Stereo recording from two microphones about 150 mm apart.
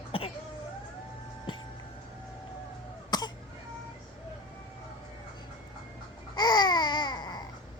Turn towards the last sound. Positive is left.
turn(degrees=30)  # may be behind; listen again after turning